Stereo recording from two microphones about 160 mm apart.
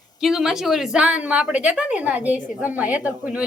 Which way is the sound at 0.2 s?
Centre (ahead or behind).